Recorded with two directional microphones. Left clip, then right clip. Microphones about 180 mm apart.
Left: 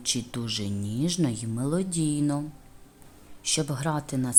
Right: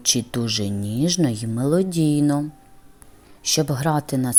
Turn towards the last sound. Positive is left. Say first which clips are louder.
# right 7 dB
turn(degrees=-25)  # may be behind; listen again after turning